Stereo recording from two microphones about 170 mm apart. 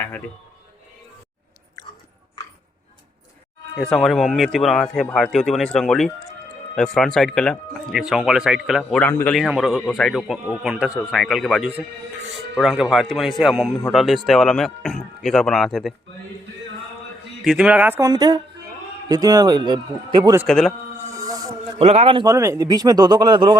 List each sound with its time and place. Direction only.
3.8 s a man's voice: centre (ahead or behind)
17.4 s speech: 5° right (ahead or behind)
18.1 s speech: 25° right (ahead or behind)
20.5 s a man's voice: centre (ahead or behind)
21.1 s music: 20° right (ahead or behind)
21.8 s speech: 35° right (ahead or behind)